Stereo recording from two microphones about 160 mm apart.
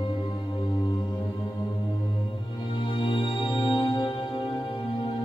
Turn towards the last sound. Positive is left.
turn(degrees=30)  # may be behind; listen again after turning